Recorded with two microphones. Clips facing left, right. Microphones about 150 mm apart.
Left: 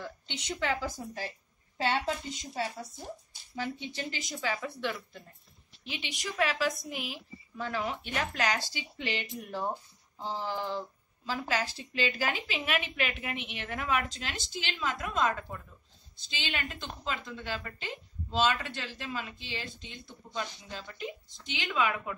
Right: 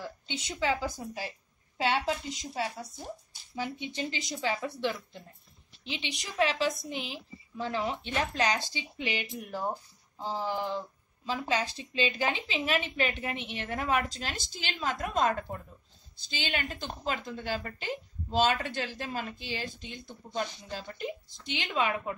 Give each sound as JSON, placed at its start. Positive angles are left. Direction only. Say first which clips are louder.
{"t": 0.0, "sound": "a woman's voice", "louder": "right 2 dB", "side_deg": -10}